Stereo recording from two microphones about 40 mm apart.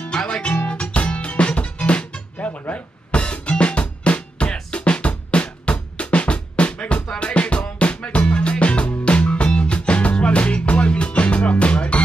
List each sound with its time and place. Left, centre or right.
0.0 s music: left